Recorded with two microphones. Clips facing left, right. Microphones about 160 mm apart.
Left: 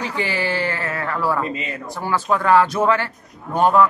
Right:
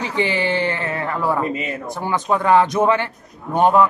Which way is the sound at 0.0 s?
20° right (ahead or behind).